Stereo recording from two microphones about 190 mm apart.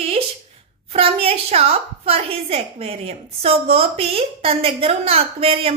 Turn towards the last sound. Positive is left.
turn(degrees=-30)  # may be behind; listen again after turning